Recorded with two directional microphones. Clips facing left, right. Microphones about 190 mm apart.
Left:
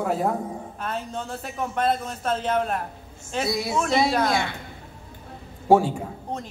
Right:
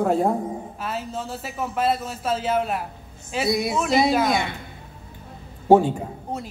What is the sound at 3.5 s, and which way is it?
Speech, 20° right (ahead or behind).